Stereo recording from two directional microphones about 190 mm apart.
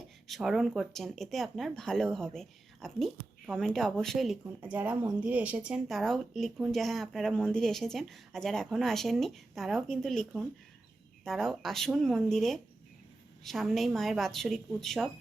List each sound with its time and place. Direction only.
0.3 s speech: centre (ahead or behind)